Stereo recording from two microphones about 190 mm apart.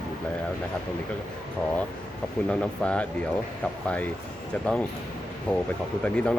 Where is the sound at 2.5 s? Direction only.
5° left (ahead or behind).